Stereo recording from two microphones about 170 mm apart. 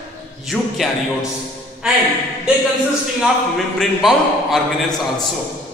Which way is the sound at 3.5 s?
Centre (ahead or behind).